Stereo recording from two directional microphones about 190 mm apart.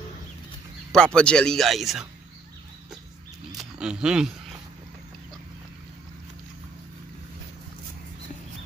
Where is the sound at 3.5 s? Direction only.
Centre (ahead or behind).